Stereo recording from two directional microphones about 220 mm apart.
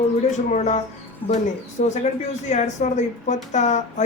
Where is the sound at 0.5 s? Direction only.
35° left (ahead or behind).